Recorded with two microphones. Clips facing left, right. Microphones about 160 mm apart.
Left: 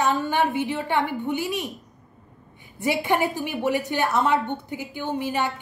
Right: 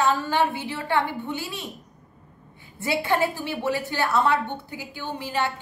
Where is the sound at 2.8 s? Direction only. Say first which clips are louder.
Left 1 dB; 15° left (ahead or behind).